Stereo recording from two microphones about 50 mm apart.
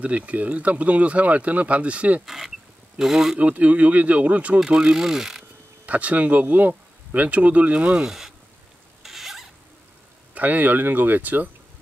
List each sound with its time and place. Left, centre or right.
0.0 s speech: right
2.2 s speech: centre
3.3 s speech: right
4.6 s speech: centre
5.9 s speech: right
9.0 s rodents: centre
10.3 s speech: right